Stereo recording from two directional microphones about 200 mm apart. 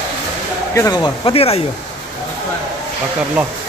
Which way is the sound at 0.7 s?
20° left (ahead or behind).